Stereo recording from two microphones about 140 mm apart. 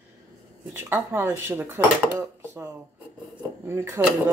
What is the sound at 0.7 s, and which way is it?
Speech, 15° right (ahead or behind).